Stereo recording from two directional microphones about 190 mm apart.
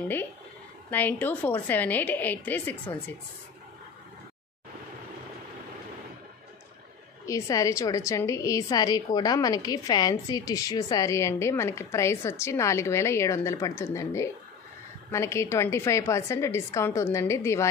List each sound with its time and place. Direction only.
0.8 s a woman's voice: 10° left (ahead or behind)
7.2 s a woman's voice: 15° left (ahead or behind)